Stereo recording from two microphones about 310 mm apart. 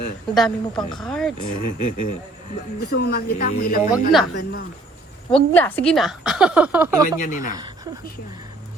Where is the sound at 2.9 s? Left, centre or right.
Left.